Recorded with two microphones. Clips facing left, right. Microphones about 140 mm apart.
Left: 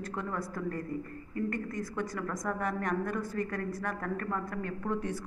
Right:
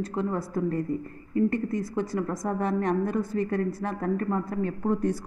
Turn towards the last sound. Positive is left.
turn(degrees=-40)  # may be behind; listen again after turning